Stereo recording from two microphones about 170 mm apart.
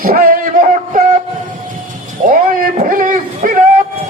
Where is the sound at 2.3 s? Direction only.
55° right (ahead or behind).